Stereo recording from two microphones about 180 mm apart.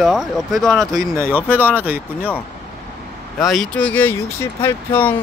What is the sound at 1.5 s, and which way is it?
Speech, 10° right (ahead or behind).